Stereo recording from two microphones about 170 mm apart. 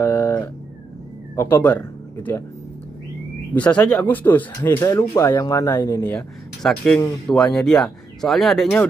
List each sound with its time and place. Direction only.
0.0 s a sound: 10° left (ahead or behind)
1.3 s speech: 15° left (ahead or behind)
3.5 s speech: 10° left (ahead or behind)
6.1 s speech: 5° left (ahead or behind)